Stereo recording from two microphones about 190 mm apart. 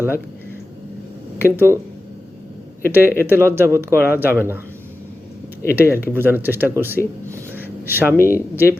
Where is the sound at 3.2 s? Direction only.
10° right (ahead or behind).